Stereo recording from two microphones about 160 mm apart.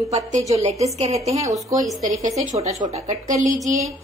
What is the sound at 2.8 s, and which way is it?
Speech, 45° right (ahead or behind).